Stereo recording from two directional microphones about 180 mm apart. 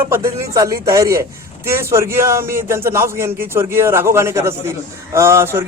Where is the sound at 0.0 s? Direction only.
15° right (ahead or behind).